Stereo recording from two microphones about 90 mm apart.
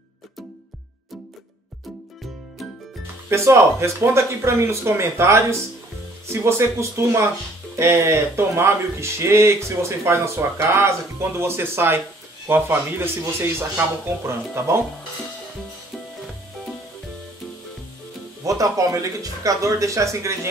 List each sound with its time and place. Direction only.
3.3 s speech: 30° right (ahead or behind)
18.4 s speech: 40° right (ahead or behind)